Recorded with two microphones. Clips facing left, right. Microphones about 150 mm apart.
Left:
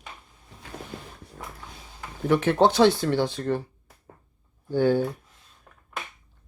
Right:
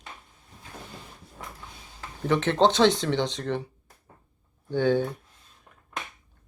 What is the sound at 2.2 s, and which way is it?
Speech, 10° left (ahead or behind).